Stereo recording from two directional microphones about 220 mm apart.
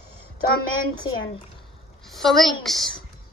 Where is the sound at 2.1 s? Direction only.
Centre (ahead or behind).